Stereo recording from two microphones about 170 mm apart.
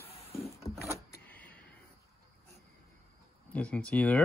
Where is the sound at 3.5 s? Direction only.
10° left (ahead or behind).